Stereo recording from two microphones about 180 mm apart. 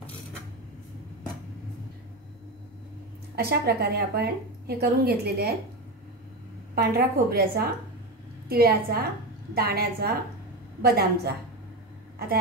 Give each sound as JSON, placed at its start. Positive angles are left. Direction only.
{"t": 3.3, "sound": "a woman's voice", "side_deg": -60}
{"t": 6.7, "sound": "a woman's voice", "side_deg": -60}